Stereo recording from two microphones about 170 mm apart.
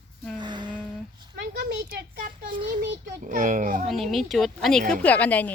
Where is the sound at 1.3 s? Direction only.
80° right.